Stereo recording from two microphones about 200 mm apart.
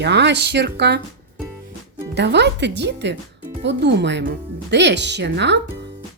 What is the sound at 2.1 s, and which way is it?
Speech, 60° right (ahead or behind).